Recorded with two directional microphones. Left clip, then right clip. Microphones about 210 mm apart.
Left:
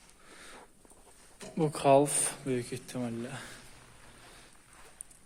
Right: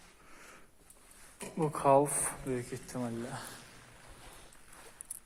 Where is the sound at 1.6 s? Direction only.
45° left (ahead or behind).